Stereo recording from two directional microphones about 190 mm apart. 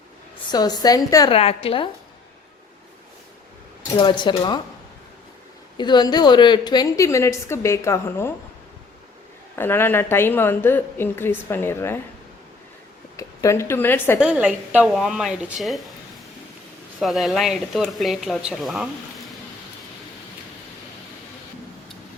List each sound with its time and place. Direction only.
0.5 s a woman's voice: 20° left (ahead or behind)
1.3 s a woman's voice: 30° left (ahead or behind)
3.9 s a woman's voice: 25° left (ahead or behind)
5.7 s a woman's voice: 25° left (ahead or behind)
9.6 s a woman's voice: 10° left (ahead or behind)
13.1 s a woman's voice: 15° left (ahead or behind)
14.2 s speech: 5° right (ahead or behind)
17.0 s speech: centre (ahead or behind)